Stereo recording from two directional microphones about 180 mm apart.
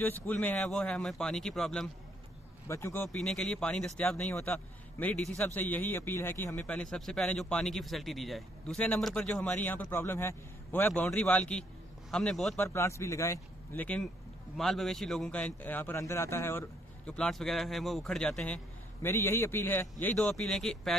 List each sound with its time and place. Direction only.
0.0 s a man's voice: 10° left (ahead or behind)
2.7 s a man's voice: 15° left (ahead or behind)
12.5 s a man's voice: 15° left (ahead or behind)